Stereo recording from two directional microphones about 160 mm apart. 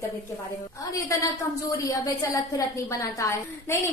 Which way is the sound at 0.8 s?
20° left (ahead or behind).